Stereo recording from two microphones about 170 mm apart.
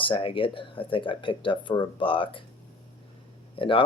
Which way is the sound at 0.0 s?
30° left (ahead or behind).